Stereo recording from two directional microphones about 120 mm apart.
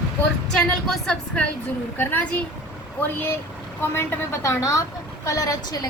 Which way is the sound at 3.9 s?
25° left (ahead or behind).